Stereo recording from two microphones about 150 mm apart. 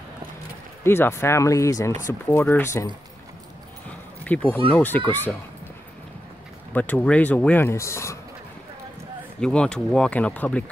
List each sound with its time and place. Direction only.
0.8 s speech: 15° left (ahead or behind)
4.2 s speech: 10° left (ahead or behind)
6.7 s speech: 10° left (ahead or behind)
9.4 s speech: 5° left (ahead or behind)